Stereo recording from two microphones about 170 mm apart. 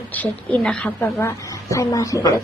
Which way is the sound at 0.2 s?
5° left (ahead or behind).